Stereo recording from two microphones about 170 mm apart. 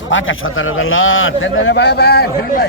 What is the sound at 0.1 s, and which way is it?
Speech, 90° left.